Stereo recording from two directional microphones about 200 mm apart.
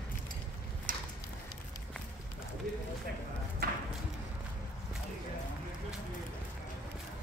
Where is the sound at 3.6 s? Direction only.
45° right (ahead or behind).